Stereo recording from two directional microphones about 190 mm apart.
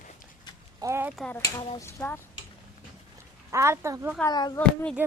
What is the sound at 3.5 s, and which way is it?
Speech, 15° right (ahead or behind).